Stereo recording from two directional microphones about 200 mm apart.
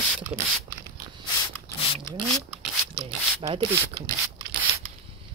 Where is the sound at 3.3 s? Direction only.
25° right (ahead or behind).